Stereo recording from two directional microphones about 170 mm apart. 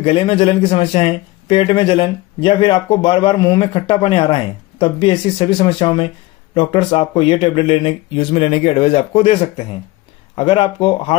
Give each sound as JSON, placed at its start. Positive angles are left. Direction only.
{"t": 0.0, "sound": "a man's voice", "side_deg": 35}